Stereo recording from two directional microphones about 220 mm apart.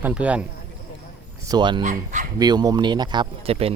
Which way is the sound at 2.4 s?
20° right (ahead or behind).